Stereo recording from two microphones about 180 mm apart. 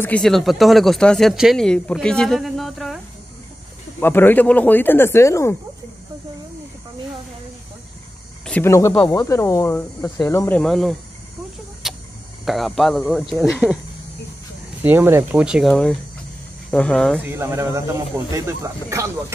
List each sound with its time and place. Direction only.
0.0 s speech: 5° left (ahead or behind)
4.0 s speech: 10° left (ahead or behind)
8.5 s speech: 10° left (ahead or behind)
10.6 s speech: centre (ahead or behind)
11.8 s a sound: centre (ahead or behind)
12.4 s speech: centre (ahead or behind)
14.8 s speech: 10° right (ahead or behind)
17.2 s speech: 15° right (ahead or behind)